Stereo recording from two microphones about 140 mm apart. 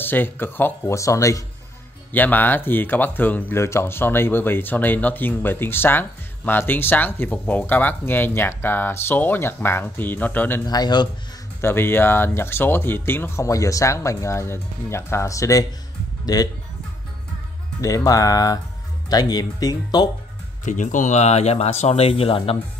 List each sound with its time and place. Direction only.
0.0 s speech: 15° left (ahead or behind)
10.6 s a man's voice: 30° left (ahead or behind)
11.6 s speech: 15° left (ahead or behind)
17.7 s speech: 25° left (ahead or behind)
20.6 s speech: 65° left (ahead or behind); by 22.6 s 45° left (ahead or behind)